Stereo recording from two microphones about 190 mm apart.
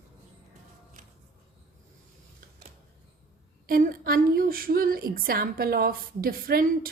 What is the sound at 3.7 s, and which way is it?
A woman's voice, 50° right (ahead or behind).